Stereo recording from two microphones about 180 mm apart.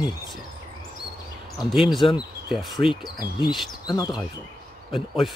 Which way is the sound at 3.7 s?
25° left (ahead or behind).